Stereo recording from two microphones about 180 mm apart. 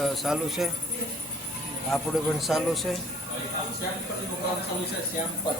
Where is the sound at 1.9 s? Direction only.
Centre (ahead or behind).